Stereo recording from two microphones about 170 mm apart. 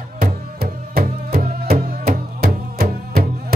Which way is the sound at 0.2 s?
60° right (ahead or behind).